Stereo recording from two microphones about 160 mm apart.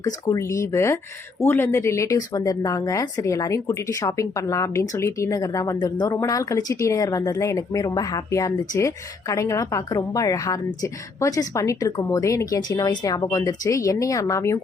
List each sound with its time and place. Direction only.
0.0 s speech: 20° left (ahead or behind)